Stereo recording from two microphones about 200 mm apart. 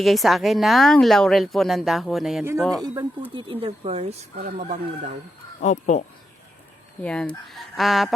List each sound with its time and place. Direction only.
0.0 s speech: centre (ahead or behind)
2.8 s speech: 20° right (ahead or behind); by 5.1 s 35° right (ahead or behind)
5.5 s speech: 40° left (ahead or behind)
7.0 s speech: 5° left (ahead or behind)